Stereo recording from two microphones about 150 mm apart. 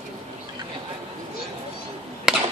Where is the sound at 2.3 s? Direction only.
5° right (ahead or behind).